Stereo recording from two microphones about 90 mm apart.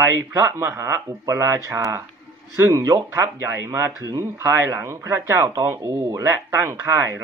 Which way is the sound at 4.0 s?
40° right (ahead or behind).